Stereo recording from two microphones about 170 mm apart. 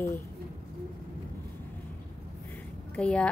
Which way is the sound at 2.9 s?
5° left (ahead or behind).